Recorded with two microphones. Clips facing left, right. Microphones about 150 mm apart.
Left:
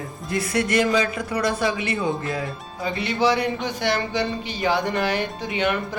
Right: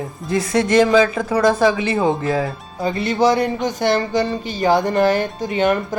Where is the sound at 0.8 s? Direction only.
90° right.